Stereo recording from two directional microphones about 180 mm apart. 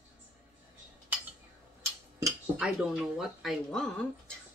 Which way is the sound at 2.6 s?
5° right (ahead or behind).